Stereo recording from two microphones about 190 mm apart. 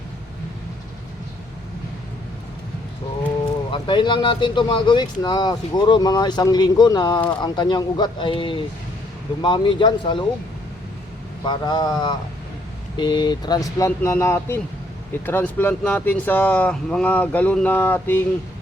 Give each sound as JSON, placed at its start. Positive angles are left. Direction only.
{"t": 3.2, "sound": "speech", "side_deg": 25}
{"t": 11.4, "sound": "speech", "side_deg": 20}